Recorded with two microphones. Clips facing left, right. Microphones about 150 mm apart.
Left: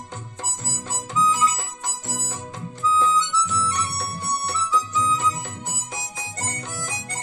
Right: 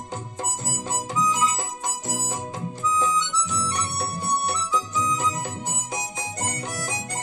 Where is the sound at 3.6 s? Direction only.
35° right (ahead or behind).